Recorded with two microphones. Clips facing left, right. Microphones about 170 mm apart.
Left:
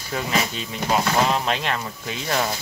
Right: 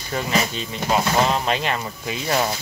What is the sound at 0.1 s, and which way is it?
Speech, centre (ahead or behind).